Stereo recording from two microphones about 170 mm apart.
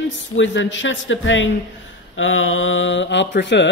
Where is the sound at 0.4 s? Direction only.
90° left.